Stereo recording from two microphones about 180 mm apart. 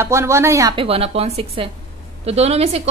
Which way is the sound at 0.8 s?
35° right (ahead or behind).